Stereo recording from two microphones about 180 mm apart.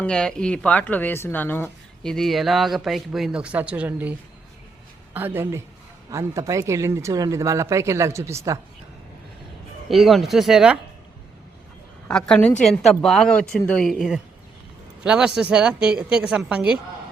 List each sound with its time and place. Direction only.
0.0 s speech: 5° left (ahead or behind)
5.1 s speech: 10° right (ahead or behind)
9.9 s speech: centre (ahead or behind)
12.0 s speech: 5° left (ahead or behind)